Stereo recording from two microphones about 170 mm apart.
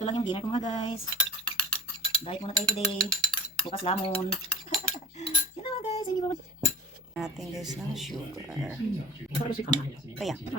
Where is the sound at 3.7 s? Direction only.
35° left (ahead or behind).